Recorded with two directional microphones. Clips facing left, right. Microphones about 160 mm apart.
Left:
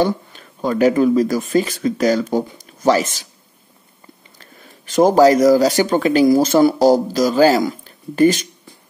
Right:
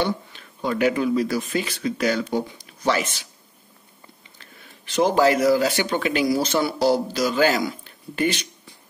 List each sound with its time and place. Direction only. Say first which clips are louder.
0.0 s speech: left 6 dB; 40° left (ahead or behind)
4.4 s speech: left 4 dB; 45° left (ahead or behind)